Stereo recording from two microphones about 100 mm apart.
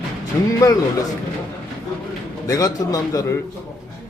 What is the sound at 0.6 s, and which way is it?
Speech, 40° left (ahead or behind).